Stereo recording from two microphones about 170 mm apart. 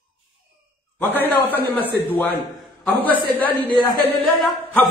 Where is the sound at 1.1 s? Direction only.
10° left (ahead or behind).